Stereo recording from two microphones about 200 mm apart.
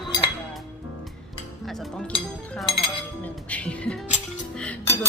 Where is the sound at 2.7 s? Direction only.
25° left (ahead or behind).